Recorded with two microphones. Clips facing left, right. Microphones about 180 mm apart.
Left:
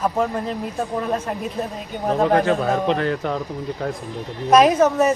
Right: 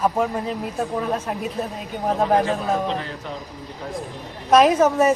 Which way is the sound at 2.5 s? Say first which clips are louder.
Left 4 dB; 60° left (ahead or behind).